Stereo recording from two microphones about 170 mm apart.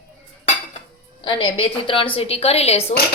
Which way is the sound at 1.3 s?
35° left (ahead or behind).